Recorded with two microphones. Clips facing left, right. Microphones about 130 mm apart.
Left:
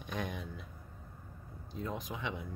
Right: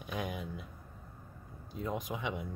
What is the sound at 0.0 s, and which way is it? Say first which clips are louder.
Speech: right 1 dB; 10° right (ahead or behind).